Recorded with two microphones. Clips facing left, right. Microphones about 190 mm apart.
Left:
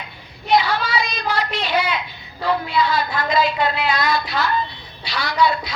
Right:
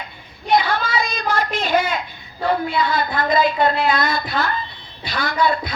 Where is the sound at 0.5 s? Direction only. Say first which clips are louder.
Even; 50° right (ahead or behind).